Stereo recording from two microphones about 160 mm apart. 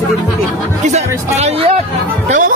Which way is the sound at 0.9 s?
45° right (ahead or behind).